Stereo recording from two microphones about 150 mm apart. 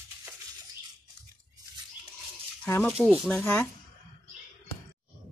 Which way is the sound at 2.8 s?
5° right (ahead or behind).